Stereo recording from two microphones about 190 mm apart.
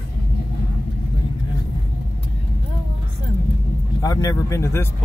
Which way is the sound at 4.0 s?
20° left (ahead or behind).